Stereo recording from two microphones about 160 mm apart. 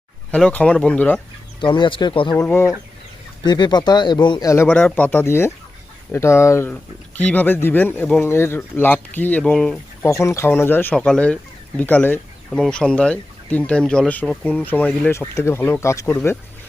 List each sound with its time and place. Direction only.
0.3 s speech: 5° left (ahead or behind)
1.6 s speech: 30° left (ahead or behind)
2.4 s speech: 15° left (ahead or behind)
3.4 s speech: 25° left (ahead or behind); by 10.1 s 5° left (ahead or behind)
10.1 s speech: 20° left (ahead or behind)